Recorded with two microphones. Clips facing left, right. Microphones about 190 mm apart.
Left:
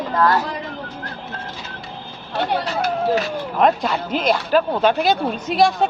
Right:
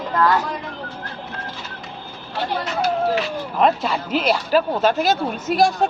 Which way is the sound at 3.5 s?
Centre (ahead or behind).